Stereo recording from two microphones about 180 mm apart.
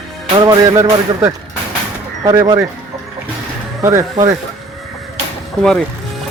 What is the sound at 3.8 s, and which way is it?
Speech, 15° right (ahead or behind).